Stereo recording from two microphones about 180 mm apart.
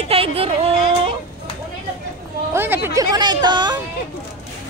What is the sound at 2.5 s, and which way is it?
Speech, 10° right (ahead or behind).